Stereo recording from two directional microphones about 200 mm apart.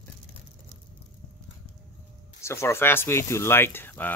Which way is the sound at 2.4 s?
15° left (ahead or behind).